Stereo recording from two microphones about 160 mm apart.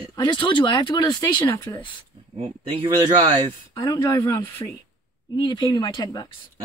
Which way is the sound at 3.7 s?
20° left (ahead or behind).